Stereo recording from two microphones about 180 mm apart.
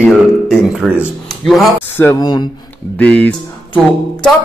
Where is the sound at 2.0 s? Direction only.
20° left (ahead or behind).